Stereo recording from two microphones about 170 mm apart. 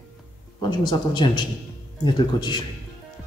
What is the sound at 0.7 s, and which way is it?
Speech, 25° left (ahead or behind).